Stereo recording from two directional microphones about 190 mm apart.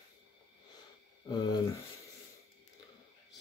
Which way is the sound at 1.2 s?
20° left (ahead or behind).